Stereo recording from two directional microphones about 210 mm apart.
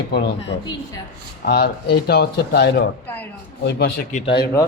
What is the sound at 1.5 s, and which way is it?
Speech, 50° left (ahead or behind).